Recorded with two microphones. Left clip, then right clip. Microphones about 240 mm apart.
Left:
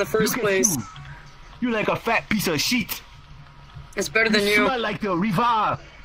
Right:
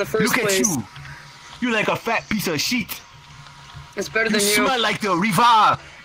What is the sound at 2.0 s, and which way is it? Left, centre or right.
Speech, centre.